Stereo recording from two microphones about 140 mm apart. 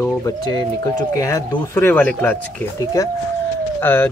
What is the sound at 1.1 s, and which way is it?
Speech, 25° left (ahead or behind).